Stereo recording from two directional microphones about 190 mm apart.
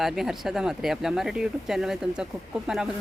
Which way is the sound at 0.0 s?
Centre (ahead or behind).